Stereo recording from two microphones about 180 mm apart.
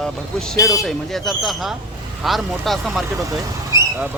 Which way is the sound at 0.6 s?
15° left (ahead or behind).